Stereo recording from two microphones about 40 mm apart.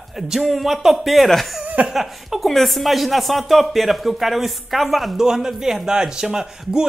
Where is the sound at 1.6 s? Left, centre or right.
Right.